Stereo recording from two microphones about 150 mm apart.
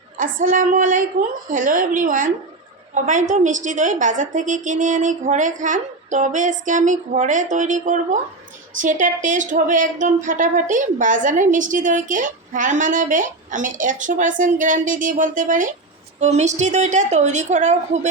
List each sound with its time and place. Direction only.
0.2 s a woman's voice: 65° right (ahead or behind)